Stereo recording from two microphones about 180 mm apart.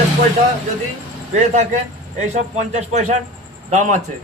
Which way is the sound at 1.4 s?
40° right (ahead or behind).